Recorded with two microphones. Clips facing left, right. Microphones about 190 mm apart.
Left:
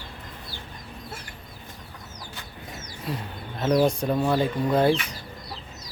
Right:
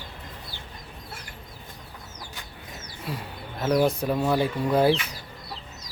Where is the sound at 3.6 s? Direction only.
5° right (ahead or behind).